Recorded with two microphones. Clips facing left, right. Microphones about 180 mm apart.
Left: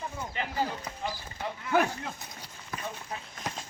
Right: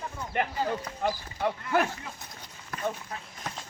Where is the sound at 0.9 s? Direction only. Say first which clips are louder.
Even; 5° left (ahead or behind).